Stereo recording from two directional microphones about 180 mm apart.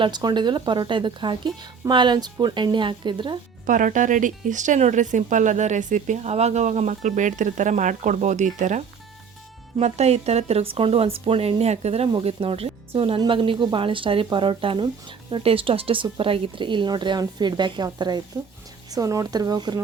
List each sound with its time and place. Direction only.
0.0 s speech: 25° right (ahead or behind)
3.7 s speech: 45° right (ahead or behind); by 19.8 s 25° right (ahead or behind)